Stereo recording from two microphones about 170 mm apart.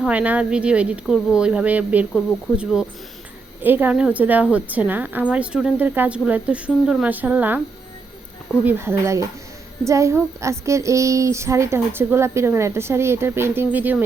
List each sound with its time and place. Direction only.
0.0 s a child's voice: 10° right (ahead or behind)
3.6 s a child's voice: 10° right (ahead or behind)
8.6 s a child's voice: 15° right (ahead or behind)